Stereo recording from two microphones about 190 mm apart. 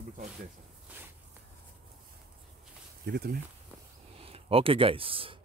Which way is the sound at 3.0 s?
55° right (ahead or behind).